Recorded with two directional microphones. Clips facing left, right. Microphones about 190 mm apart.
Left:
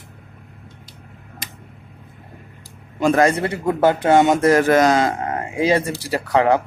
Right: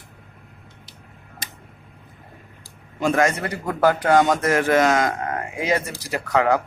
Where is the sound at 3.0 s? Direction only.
35° left (ahead or behind).